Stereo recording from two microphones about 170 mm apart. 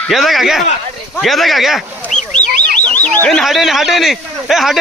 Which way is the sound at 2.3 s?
45° left (ahead or behind).